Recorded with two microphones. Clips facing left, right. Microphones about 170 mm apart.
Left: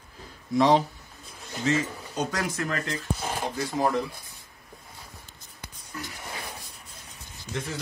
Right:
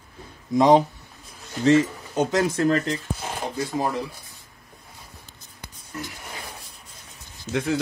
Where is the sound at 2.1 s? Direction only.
25° right (ahead or behind).